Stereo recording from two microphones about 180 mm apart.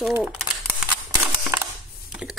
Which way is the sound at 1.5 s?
10° right (ahead or behind).